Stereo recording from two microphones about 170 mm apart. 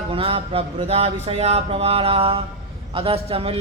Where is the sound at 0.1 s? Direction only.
35° right (ahead or behind).